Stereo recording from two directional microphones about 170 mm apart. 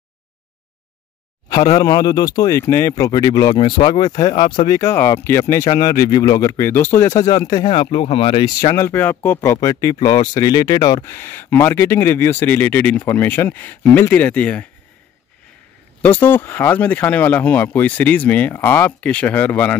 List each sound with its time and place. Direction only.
1.5 s speech: 20° left (ahead or behind)
16.0 s speech: 10° left (ahead or behind)